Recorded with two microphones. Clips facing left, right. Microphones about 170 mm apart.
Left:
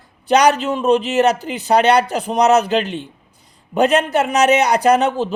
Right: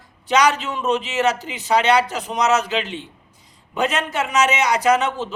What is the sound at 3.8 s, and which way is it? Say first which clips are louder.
A man's voice: left 7 dB; 60° left (ahead or behind).